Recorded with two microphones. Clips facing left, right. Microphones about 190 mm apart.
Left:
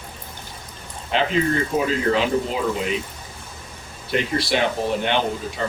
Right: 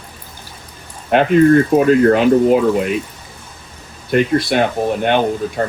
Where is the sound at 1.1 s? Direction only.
55° right (ahead or behind).